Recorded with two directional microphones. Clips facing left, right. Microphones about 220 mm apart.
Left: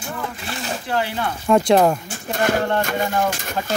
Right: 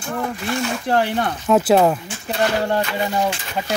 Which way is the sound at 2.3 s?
45° left (ahead or behind).